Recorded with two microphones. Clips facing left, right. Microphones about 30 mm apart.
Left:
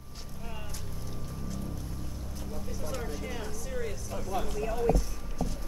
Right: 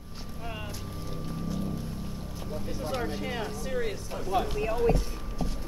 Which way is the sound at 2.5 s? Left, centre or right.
Right.